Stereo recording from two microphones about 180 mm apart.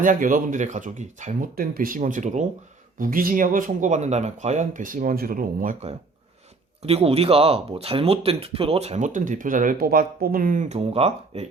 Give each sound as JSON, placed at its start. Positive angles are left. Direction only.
{"t": 0.0, "sound": "speech", "side_deg": -45}
{"t": 6.8, "sound": "speech", "side_deg": -35}